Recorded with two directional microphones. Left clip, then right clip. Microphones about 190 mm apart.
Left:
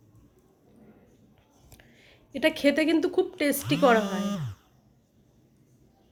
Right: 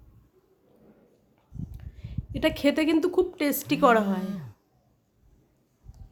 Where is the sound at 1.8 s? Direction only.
10° right (ahead or behind).